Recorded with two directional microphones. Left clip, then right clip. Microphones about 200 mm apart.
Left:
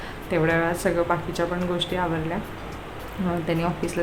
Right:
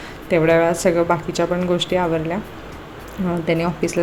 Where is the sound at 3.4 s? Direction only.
20° right (ahead or behind).